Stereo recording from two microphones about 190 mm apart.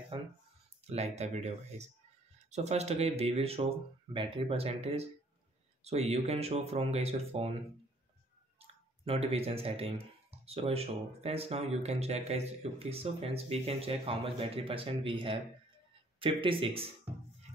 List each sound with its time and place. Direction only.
0.8 s speech: 35° right (ahead or behind)
8.5 s speech: 30° right (ahead or behind)